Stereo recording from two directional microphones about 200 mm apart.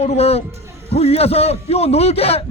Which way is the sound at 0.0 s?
30° left (ahead or behind).